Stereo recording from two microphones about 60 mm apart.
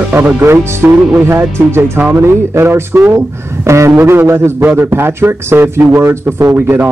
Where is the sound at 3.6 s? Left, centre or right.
Right.